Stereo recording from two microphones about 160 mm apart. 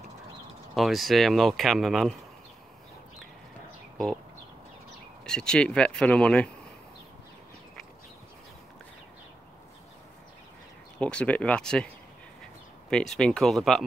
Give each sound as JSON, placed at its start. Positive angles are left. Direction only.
{"t": 0.7, "sound": "speech", "side_deg": 0}
{"t": 5.2, "sound": "speech", "side_deg": 5}
{"t": 11.0, "sound": "speech", "side_deg": 5}
{"t": 12.9, "sound": "speech", "side_deg": 5}